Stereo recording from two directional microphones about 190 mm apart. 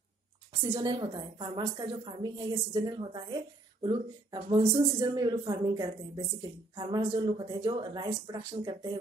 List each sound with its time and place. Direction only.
0.6 s a woman's voice: 20° right (ahead or behind)